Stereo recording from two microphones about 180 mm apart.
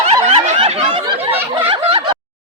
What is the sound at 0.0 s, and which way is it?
Snicker, 35° right (ahead or behind).